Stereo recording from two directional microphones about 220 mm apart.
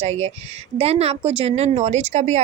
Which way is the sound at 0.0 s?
30° right (ahead or behind).